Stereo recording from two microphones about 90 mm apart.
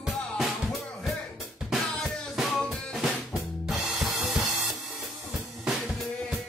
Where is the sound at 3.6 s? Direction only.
Centre (ahead or behind).